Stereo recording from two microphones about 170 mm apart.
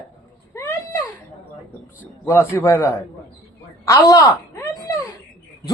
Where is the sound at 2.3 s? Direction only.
15° left (ahead or behind).